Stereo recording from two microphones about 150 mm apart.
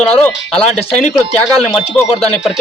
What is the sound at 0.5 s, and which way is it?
Speech, 5° left (ahead or behind).